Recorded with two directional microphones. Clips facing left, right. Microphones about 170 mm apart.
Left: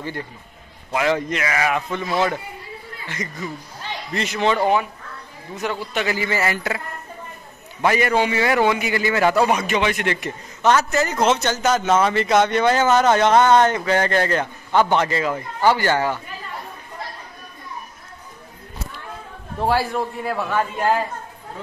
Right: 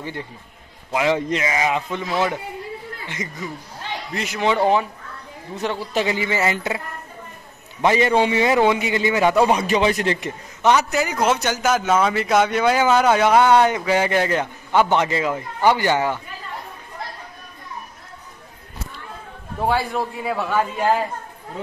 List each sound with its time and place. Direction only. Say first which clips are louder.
0.0 s a man's voice: left 1 dB; 20° right (ahead or behind)
4.1 s a man's voice: left 1 dB; 5° right (ahead or behind)
5.6 s a man's voice: right 2 dB; 30° right (ahead or behind)
7.8 s a man's voice: right 2 dB; 25° right (ahead or behind)
9.5 s a man's voice: right 2 dB; 30° right (ahead or behind)
10.6 s a man's voice: even; 15° right (ahead or behind)
19.6 s a man's voice: left 1 dB; centre (ahead or behind)